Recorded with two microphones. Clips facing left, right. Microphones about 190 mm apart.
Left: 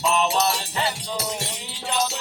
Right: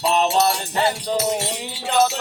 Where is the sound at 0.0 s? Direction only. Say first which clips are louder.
Right 3 dB; 40° right (ahead or behind).